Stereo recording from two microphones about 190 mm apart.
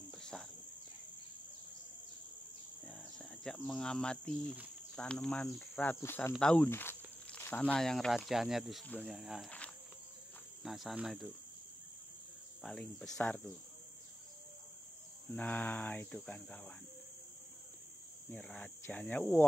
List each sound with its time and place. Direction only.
0.1 s cricket: 5° left (ahead or behind)
2.8 s cricket: 5° left (ahead or behind)
4.9 s speech: 5° left (ahead or behind)
10.6 s cricket: centre (ahead or behind)
12.6 s cricket: 5° left (ahead or behind)
15.3 s speech: 10° left (ahead or behind)
18.3 s speech: 5° left (ahead or behind)